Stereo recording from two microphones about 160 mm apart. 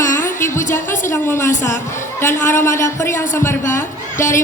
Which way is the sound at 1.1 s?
20° left (ahead or behind).